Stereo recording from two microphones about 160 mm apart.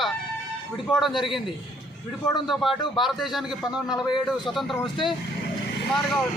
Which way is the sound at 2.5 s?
Centre (ahead or behind).